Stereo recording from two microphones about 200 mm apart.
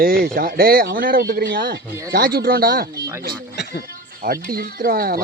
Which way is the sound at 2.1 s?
45° right (ahead or behind).